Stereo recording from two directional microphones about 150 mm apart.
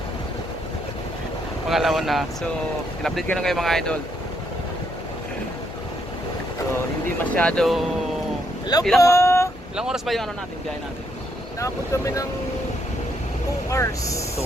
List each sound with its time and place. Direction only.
1.7 s speech: centre (ahead or behind)
3.2 s speech: 5° left (ahead or behind)
7.3 s speech: 5° left (ahead or behind)
9.0 s speech: 20° left (ahead or behind)
9.7 s speech: 5° right (ahead or behind)
11.6 s speech: 20° left (ahead or behind)
13.7 s speech: 20° left (ahead or behind)